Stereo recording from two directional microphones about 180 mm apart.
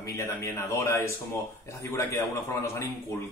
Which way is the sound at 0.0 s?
15° left (ahead or behind).